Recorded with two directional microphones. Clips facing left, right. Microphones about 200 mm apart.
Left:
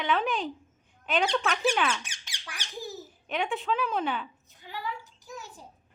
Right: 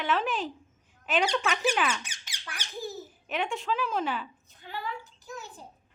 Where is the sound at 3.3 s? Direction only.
Centre (ahead or behind).